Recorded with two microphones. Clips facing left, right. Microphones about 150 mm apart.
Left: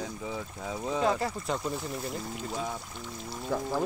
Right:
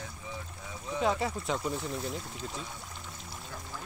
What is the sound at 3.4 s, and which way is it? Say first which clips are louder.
Speech: left 16 dB; 90° left.